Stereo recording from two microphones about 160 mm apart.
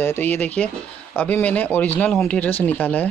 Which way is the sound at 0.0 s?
15° left (ahead or behind).